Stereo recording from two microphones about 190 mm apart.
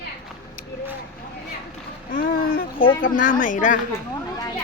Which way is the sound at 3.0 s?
45° left (ahead or behind).